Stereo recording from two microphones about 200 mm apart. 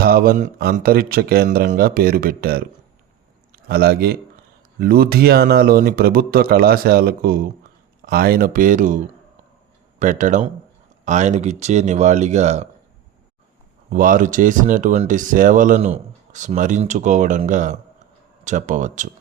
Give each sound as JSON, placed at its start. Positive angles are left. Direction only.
{"t": 0.0, "sound": "a man's voice", "side_deg": -50}
{"t": 10.0, "sound": "speech", "side_deg": -40}
{"t": 13.9, "sound": "speech", "side_deg": -45}